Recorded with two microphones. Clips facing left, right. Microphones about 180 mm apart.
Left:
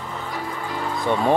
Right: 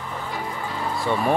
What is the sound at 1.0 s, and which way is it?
Speech, 20° left (ahead or behind).